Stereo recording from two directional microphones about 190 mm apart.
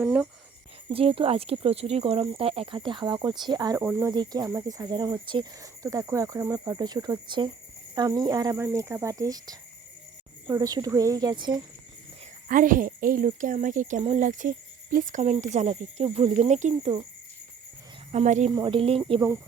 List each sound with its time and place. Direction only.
0.0 s speech: 5° right (ahead or behind)
0.9 s speech: 30° right (ahead or behind)
3.8 s speech: 10° right (ahead or behind)
4.1 s speech: 20° right (ahead or behind)
12.5 s speech: 45° right (ahead or behind); by 17.1 s 30° right (ahead or behind)
18.1 s speech: 35° right (ahead or behind)
18.5 s speech: 25° right (ahead or behind)